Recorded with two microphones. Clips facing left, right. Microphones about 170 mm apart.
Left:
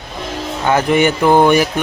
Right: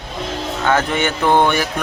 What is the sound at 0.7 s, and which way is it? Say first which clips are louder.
Speech: left 5 dB; 15° left (ahead or behind).